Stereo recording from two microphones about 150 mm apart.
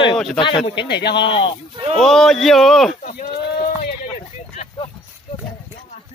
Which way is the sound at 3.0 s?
60° left (ahead or behind).